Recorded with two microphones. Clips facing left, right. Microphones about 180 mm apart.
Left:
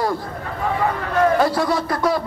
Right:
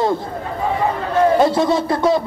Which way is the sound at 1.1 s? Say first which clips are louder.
Right 3 dB; 25° right (ahead or behind).